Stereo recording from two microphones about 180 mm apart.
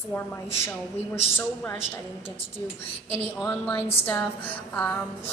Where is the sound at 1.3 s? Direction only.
15° left (ahead or behind).